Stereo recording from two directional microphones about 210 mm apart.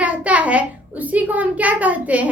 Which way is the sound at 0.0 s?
5° right (ahead or behind).